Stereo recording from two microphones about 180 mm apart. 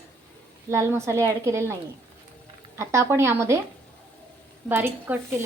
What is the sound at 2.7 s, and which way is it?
Speech, 15° right (ahead or behind).